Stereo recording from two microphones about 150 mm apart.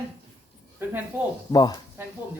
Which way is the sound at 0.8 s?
15° right (ahead or behind).